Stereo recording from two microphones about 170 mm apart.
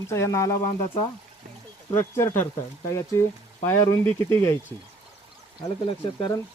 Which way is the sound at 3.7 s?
15° left (ahead or behind).